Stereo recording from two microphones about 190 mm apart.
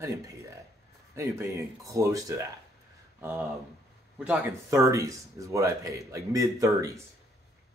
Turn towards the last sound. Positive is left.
turn(degrees=-15)  # may be behind; listen again after turning